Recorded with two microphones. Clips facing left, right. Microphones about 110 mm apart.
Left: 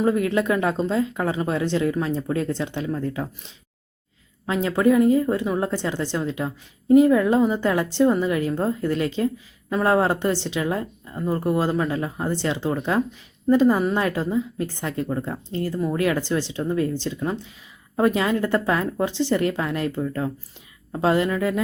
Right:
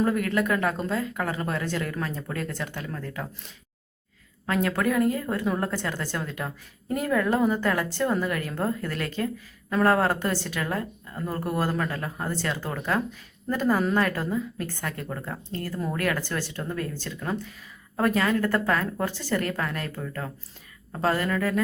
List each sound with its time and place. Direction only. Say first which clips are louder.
0.3 s a woman's voice: left 3 dB; 25° left (ahead or behind)
4.4 s a woman's voice: left 5 dB; 15° left (ahead or behind)